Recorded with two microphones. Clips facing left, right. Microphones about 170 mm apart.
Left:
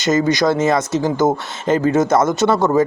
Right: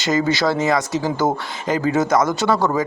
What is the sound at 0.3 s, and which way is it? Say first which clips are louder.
Speech: left 3 dB; 20° left (ahead or behind).